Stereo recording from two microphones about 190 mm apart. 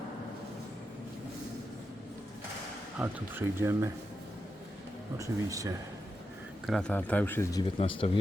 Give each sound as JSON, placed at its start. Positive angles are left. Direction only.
{"t": 3.0, "sound": "speech", "side_deg": -15}
{"t": 5.1, "sound": "speech", "side_deg": -15}
{"t": 6.7, "sound": "speech", "side_deg": 5}
{"t": 7.8, "sound": "speech", "side_deg": 30}